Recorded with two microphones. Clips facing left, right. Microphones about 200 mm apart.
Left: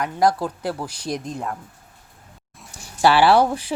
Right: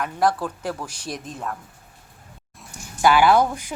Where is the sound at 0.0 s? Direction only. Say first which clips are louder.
Left 2 dB; 15° left (ahead or behind).